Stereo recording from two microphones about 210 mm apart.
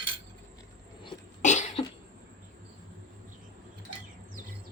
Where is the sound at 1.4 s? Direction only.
35° left (ahead or behind).